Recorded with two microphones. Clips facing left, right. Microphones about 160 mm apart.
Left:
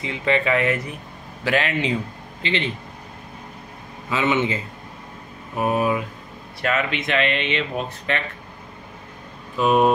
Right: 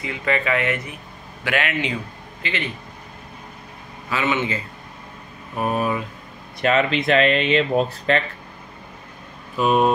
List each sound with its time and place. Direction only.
0.0 s a man's voice: 25° left (ahead or behind)
4.1 s speech: 20° left (ahead or behind)
5.6 s speech: 15° left (ahead or behind)
6.6 s speech: 30° right (ahead or behind)
9.6 s speech: centre (ahead or behind)